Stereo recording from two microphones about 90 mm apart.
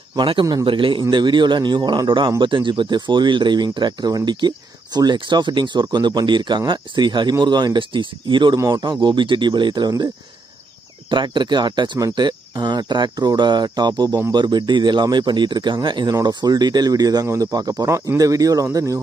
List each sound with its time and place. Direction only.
0.1 s a man's voice: 60° right (ahead or behind)
1.1 s speech: 60° right (ahead or behind)
11.1 s speech: 60° right (ahead or behind)
16.1 s speech: 50° right (ahead or behind)